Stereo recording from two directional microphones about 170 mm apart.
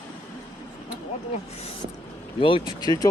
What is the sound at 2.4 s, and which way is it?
Speech, 30° left (ahead or behind).